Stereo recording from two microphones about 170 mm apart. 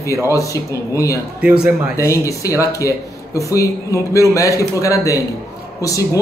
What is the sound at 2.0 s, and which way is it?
A man's voice, 15° left (ahead or behind).